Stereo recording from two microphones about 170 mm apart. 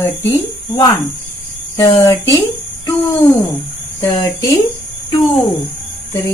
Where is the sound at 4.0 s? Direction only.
20° left (ahead or behind).